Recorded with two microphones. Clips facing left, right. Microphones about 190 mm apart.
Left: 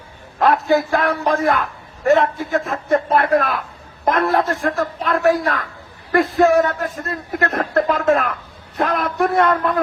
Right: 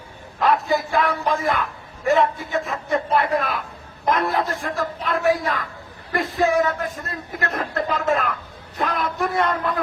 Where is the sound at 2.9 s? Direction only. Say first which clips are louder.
Left 5 dB; 55° left (ahead or behind).